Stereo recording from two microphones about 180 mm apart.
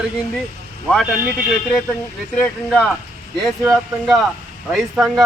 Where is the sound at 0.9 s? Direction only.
Centre (ahead or behind).